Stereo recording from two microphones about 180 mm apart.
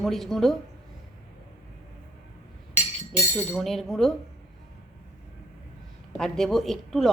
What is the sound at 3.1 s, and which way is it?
A woman's voice, 10° left (ahead or behind).